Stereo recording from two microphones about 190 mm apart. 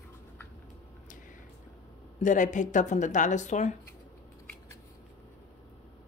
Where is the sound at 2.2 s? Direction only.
40° left (ahead or behind).